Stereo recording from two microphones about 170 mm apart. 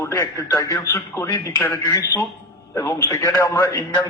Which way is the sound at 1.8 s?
25° left (ahead or behind).